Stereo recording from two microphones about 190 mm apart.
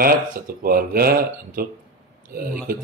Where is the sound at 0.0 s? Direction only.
50° right (ahead or behind).